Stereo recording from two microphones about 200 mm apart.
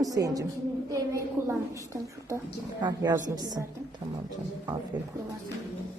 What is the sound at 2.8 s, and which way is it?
Speech, 20° right (ahead or behind).